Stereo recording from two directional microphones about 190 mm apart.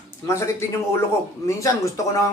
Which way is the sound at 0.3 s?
15° left (ahead or behind).